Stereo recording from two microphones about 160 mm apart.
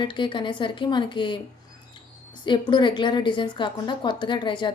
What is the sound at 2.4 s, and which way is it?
A woman's voice, 30° left (ahead or behind).